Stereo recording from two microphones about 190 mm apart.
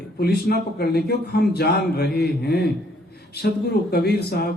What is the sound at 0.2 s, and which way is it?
A man's voice, 60° left (ahead or behind).